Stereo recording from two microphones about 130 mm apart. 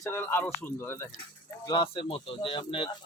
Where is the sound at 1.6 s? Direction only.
35° left (ahead or behind).